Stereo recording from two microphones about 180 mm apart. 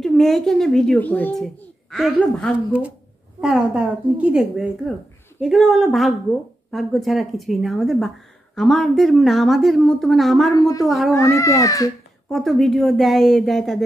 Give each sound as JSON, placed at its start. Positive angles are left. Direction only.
{"t": 0.0, "sound": "a child's voice", "side_deg": 0}
{"t": 11.1, "sound": "speech", "side_deg": 15}
{"t": 12.3, "sound": "a child's voice", "side_deg": 0}